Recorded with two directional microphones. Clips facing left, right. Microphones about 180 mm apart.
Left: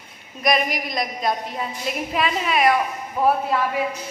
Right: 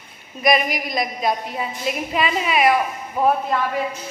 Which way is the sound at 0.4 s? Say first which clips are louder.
Right 2 dB; centre (ahead or behind).